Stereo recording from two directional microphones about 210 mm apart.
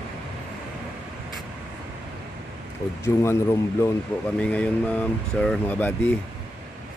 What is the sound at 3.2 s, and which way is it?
Speech, 15° left (ahead or behind).